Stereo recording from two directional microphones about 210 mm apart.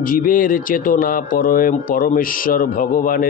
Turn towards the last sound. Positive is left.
turn(degrees=40)  # may be behind; listen again after turning